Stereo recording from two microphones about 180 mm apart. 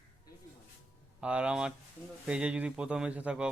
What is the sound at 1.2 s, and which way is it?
Speech, 5° right (ahead or behind).